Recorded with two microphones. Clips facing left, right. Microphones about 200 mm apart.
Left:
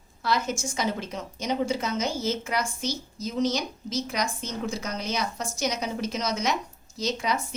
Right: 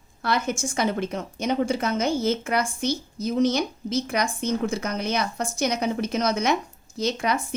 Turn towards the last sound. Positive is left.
turn(degrees=-55)  # may be behind; listen again after turning